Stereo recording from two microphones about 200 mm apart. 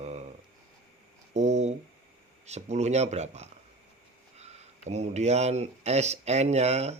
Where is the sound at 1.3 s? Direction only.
35° right (ahead or behind).